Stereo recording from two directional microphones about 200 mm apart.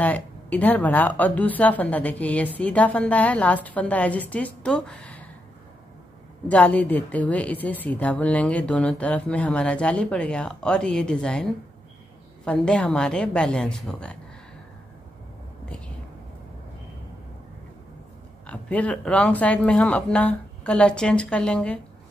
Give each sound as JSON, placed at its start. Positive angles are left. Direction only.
{"t": 0.0, "sound": "speech", "side_deg": 10}
{"t": 6.5, "sound": "speech", "side_deg": 5}
{"t": 12.4, "sound": "speech", "side_deg": 5}
{"t": 18.5, "sound": "speech", "side_deg": 5}